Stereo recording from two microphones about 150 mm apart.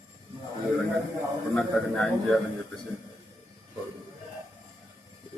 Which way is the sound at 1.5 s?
Centre (ahead or behind).